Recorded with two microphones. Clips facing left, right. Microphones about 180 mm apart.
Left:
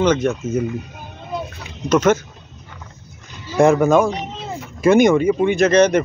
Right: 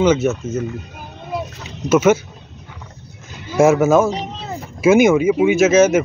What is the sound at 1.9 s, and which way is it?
Speech, 10° right (ahead or behind).